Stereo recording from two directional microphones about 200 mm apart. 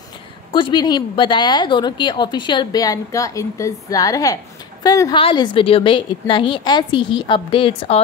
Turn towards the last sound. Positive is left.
turn(degrees=25)  # may be behind; listen again after turning